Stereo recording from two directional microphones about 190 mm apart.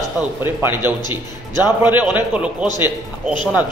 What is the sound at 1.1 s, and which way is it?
Speech, 20° left (ahead or behind).